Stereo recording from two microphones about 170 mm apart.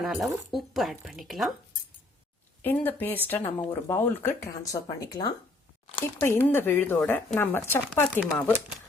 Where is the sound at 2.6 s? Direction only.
10° left (ahead or behind).